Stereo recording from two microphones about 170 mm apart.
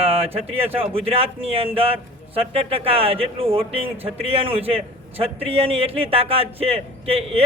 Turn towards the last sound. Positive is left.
turn(degrees=-35)  # may be behind; listen again after turning